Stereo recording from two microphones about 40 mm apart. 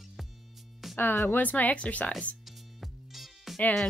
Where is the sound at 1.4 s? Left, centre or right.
Left.